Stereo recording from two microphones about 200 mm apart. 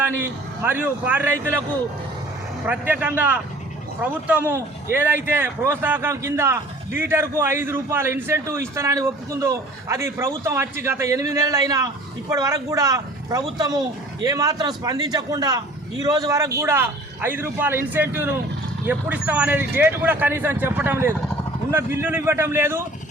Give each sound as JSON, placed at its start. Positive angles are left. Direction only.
{"t": 0.2, "sound": "a man's voice", "side_deg": -10}
{"t": 2.6, "sound": "a man's voice", "side_deg": -10}